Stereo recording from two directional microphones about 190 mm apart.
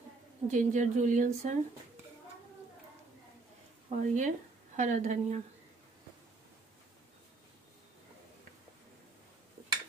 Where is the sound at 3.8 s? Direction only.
40° right (ahead or behind).